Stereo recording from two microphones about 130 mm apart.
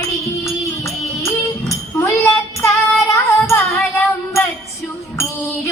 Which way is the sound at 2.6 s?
20° left (ahead or behind).